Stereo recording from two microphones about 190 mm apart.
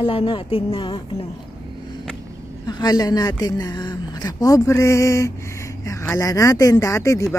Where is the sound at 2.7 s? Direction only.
20° left (ahead or behind).